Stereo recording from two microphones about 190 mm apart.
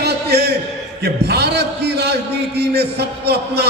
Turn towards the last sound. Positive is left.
turn(degrees=-60)  # may be behind; listen again after turning